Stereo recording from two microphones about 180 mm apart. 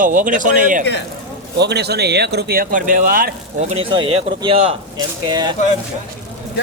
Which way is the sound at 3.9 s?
25° right (ahead or behind).